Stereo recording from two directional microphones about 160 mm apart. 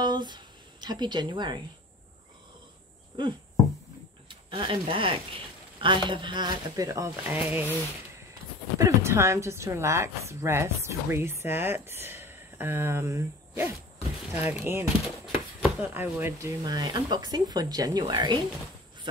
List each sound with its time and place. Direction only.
0.0 s speech: 25° right (ahead or behind)
4.3 s speech: 30° right (ahead or behind); by 7.6 s 10° right (ahead or behind)
8.7 s a woman's voice: 20° right (ahead or behind)